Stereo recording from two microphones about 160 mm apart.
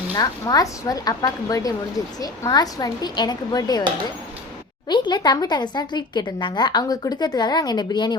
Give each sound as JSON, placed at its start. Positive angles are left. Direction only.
{"t": 0.1, "sound": "speech", "side_deg": 25}
{"t": 4.9, "sound": "speech", "side_deg": 30}